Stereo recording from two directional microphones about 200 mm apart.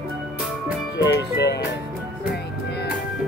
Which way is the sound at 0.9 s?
60° left (ahead or behind).